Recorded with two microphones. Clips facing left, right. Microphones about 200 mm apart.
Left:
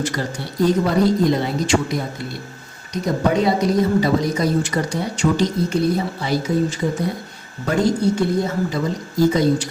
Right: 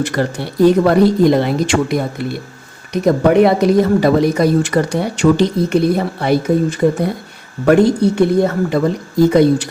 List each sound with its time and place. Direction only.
0.0 s speech: 65° right (ahead or behind)